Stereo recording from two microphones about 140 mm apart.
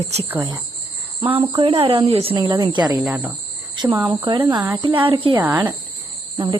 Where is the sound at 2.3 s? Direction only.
30° right (ahead or behind).